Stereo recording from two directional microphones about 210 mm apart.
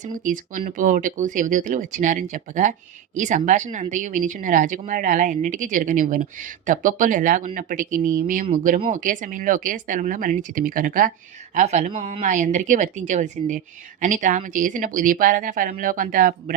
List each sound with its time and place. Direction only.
0.0 s speech: 40° right (ahead or behind)
12.2 s speech: 35° right (ahead or behind)